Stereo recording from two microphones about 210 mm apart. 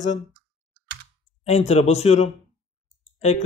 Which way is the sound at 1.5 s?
30° left (ahead or behind).